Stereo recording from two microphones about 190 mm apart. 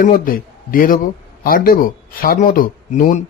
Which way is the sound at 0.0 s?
45° left (ahead or behind).